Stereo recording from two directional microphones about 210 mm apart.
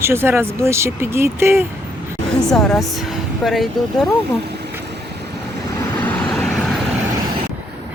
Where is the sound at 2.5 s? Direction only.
Centre (ahead or behind).